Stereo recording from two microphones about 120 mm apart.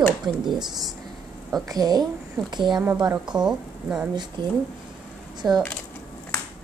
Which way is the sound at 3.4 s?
5° right (ahead or behind).